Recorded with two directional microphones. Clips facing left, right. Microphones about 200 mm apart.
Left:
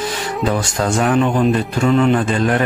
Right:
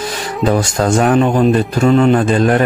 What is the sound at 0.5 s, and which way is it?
A man's voice, 45° right (ahead or behind).